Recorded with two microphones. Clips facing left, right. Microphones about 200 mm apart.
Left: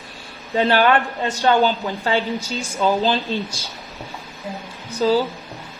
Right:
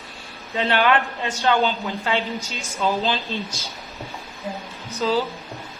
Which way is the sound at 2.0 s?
35° left (ahead or behind).